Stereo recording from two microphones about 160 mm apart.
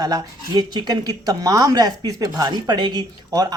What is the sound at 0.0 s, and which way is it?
Speech, 25° right (ahead or behind).